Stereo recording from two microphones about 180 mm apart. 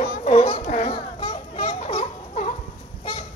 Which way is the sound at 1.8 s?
40° left (ahead or behind).